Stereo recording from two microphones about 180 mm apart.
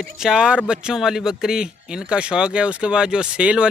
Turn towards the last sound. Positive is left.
turn(degrees=-5)  # may be behind; listen again after turning